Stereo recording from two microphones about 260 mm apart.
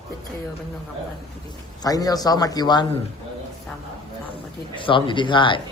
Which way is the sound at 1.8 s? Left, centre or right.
Centre.